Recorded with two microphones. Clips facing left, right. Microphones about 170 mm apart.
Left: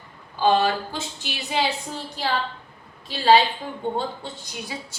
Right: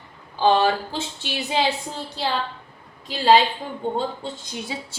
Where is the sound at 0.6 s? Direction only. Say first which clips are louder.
Right 2 dB; 30° right (ahead or behind).